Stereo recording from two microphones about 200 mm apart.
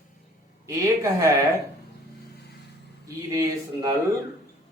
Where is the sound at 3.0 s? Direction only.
15° right (ahead or behind).